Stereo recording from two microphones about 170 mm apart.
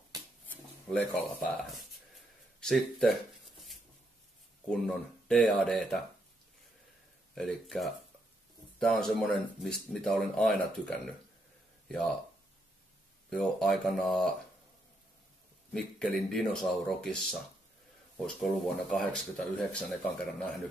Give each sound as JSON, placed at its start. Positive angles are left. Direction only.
{"t": 0.5, "sound": "speech", "side_deg": 10}
{"t": 2.6, "sound": "a sound", "side_deg": 0}
{"t": 4.6, "sound": "speech", "side_deg": 5}
{"t": 7.3, "sound": "speech", "side_deg": 5}
{"t": 13.3, "sound": "speech", "side_deg": 5}
{"t": 15.7, "sound": "speech", "side_deg": 5}